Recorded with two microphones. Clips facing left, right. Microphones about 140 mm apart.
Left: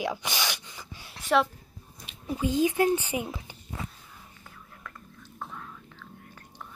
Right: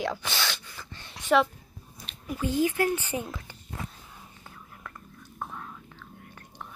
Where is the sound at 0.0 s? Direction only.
15° left (ahead or behind).